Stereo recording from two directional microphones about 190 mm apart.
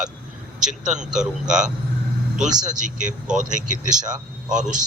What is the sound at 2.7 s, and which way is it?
Speech, 40° right (ahead or behind).